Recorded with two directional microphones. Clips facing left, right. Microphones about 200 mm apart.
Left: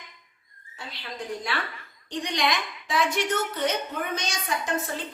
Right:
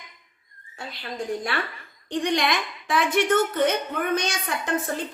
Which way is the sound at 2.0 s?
55° right (ahead or behind).